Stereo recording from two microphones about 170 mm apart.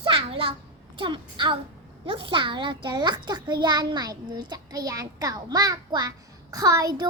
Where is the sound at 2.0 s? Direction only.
30° right (ahead or behind).